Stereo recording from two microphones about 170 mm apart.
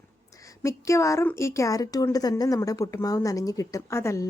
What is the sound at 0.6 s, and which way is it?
A woman's voice, 15° left (ahead or behind).